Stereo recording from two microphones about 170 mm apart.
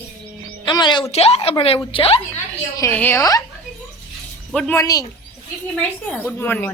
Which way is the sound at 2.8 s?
10° left (ahead or behind).